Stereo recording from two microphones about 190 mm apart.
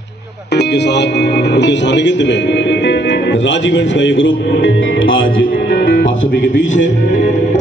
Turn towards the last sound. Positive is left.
turn(degrees=40)  # may be behind; listen again after turning